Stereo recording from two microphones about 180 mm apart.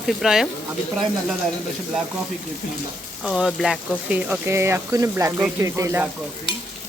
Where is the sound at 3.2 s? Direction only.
5° right (ahead or behind).